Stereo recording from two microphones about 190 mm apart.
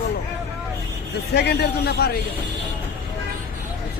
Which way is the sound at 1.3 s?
60° left (ahead or behind).